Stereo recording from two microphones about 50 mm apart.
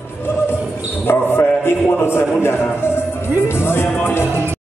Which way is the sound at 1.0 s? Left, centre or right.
Left.